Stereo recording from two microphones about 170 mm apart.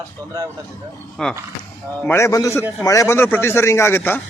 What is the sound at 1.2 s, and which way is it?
Speech, 5° left (ahead or behind).